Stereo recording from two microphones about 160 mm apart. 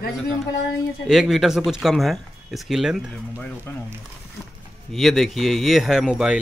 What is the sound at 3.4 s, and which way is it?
Speech, 15° left (ahead or behind).